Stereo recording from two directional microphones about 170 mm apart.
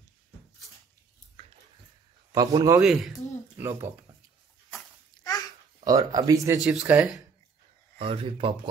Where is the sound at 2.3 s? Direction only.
20° right (ahead or behind).